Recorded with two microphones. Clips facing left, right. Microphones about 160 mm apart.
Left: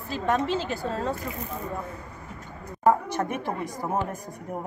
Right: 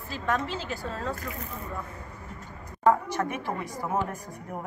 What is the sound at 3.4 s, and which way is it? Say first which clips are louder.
Speech: left 2 dB; 20° left (ahead or behind).